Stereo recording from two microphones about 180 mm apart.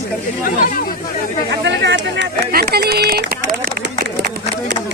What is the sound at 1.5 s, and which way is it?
Speech, 85° right.